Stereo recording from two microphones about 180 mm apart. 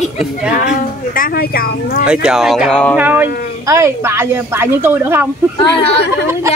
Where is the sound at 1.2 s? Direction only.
55° left (ahead or behind).